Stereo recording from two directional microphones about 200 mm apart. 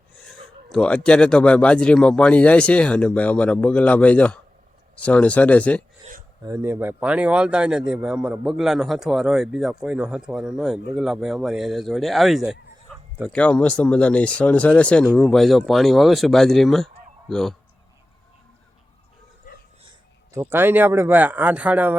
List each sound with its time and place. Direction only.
0.3 s speech: 5° left (ahead or behind)
6.4 s speech: 15° right (ahead or behind)
12.9 s bow-wow: centre (ahead or behind)
13.3 s speech: 5° left (ahead or behind)
19.8 s a sound: 25° right (ahead or behind)
20.4 s speech: 10° right (ahead or behind)